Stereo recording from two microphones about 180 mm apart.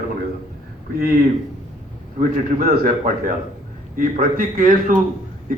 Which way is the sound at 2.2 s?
50° right (ahead or behind).